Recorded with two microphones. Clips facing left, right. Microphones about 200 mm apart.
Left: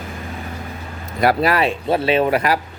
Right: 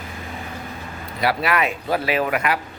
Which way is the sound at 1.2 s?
35° left (ahead or behind).